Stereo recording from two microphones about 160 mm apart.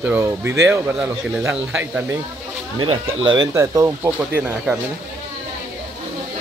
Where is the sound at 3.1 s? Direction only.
20° right (ahead or behind).